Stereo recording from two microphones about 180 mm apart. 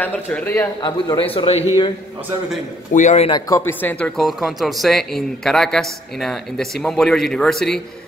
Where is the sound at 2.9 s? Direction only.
40° left (ahead or behind).